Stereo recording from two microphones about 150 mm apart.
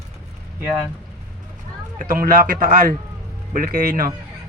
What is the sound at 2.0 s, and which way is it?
Speech, 75° right (ahead or behind).